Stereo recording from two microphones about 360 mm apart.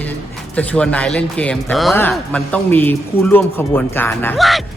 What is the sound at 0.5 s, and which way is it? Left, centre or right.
Speech, centre.